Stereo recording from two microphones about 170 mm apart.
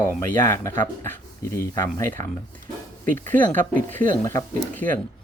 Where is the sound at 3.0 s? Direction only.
50° right (ahead or behind).